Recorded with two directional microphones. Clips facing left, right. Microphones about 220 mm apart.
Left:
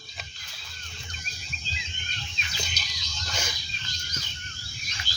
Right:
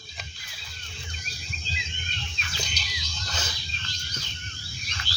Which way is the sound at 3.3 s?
10° left (ahead or behind).